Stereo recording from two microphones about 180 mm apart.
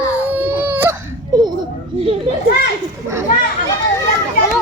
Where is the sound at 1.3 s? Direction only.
20° right (ahead or behind).